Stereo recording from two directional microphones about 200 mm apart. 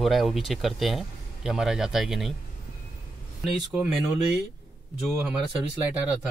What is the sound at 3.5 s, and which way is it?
Speech, 5° right (ahead or behind).